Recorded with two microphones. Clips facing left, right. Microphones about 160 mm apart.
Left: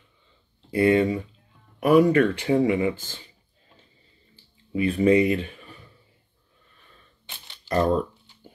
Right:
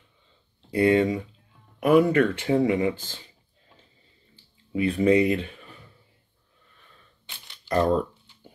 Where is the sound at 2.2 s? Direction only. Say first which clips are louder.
Left 1 dB; 10° left (ahead or behind).